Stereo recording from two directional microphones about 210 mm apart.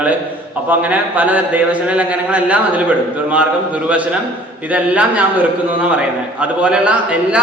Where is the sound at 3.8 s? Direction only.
5° right (ahead or behind).